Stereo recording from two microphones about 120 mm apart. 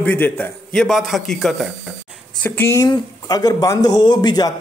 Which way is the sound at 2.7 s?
35° left (ahead or behind).